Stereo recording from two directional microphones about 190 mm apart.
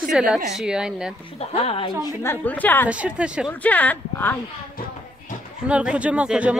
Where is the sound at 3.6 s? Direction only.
10° left (ahead or behind).